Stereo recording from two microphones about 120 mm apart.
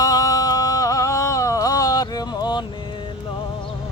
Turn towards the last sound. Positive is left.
turn(degrees=40)  # may be behind; listen again after turning